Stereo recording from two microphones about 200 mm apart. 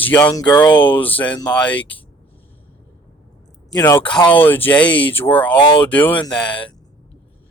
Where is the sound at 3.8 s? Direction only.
15° left (ahead or behind).